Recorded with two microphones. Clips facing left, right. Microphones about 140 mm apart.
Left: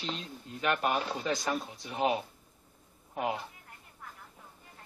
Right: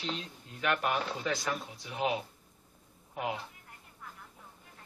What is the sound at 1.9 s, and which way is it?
Speech, 35° left (ahead or behind).